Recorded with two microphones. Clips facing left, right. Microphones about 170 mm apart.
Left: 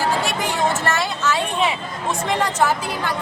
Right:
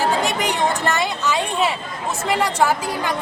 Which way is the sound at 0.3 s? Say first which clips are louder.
Right 1 dB; 20° right (ahead or behind).